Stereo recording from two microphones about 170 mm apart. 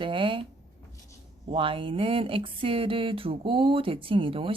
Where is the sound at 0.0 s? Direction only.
30° right (ahead or behind).